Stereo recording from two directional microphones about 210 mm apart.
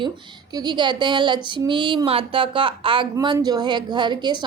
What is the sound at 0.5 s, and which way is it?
Speech, 20° right (ahead or behind).